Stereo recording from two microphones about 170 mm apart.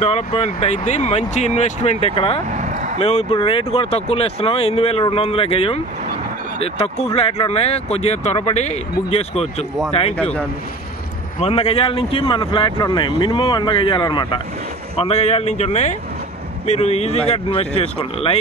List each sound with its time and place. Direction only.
0.0 s speech: 35° left (ahead or behind)
2.5 s a sound: 45° right (ahead or behind)
3.0 s speech: 40° left (ahead or behind)
11.3 s speech: 35° left (ahead or behind)
15.0 s speech: 40° left (ahead or behind)